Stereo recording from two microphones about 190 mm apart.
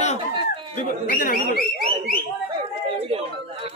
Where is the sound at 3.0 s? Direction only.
30° right (ahead or behind).